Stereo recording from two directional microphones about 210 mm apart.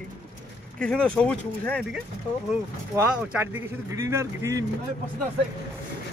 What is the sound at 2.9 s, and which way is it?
A man's voice, 15° right (ahead or behind).